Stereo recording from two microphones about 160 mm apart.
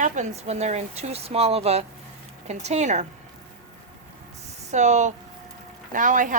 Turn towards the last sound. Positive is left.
turn(degrees=-55)  # may be behind; listen again after turning